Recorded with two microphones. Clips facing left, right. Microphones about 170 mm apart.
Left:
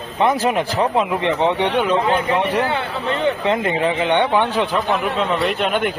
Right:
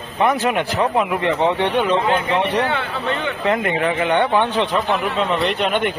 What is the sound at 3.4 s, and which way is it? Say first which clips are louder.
Speech: even; 25° left (ahead or behind).